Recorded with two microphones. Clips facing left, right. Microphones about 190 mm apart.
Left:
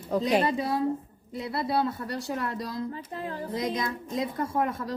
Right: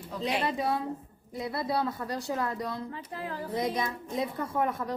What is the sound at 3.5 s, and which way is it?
Speech, 90° left.